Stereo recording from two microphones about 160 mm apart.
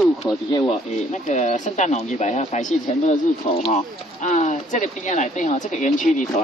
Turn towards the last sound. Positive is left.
turn(degrees=50)  # may be behind; listen again after turning